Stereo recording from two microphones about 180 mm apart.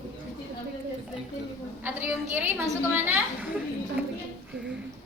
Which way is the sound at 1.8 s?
10° right (ahead or behind).